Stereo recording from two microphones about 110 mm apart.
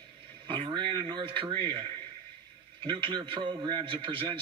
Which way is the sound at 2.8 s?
50° right (ahead or behind).